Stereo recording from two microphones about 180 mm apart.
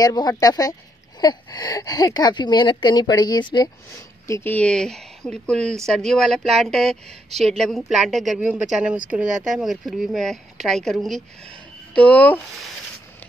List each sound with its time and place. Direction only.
0.0 s speech: 20° left (ahead or behind)
4.3 s speech: 10° left (ahead or behind)